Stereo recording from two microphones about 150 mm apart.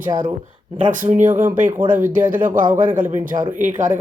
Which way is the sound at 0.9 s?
55° right (ahead or behind).